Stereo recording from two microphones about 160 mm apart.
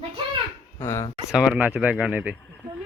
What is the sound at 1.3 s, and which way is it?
Speech, 5° right (ahead or behind).